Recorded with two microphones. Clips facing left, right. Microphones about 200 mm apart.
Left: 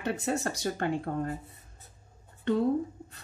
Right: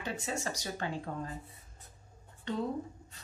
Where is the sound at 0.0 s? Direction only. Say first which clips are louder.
Left 7 dB; 60° left (ahead or behind).